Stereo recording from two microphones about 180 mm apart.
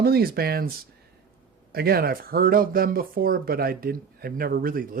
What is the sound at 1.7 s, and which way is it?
Speech, 60° right (ahead or behind).